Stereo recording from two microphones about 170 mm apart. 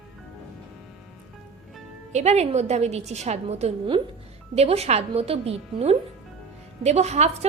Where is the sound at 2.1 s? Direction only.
40° right (ahead or behind).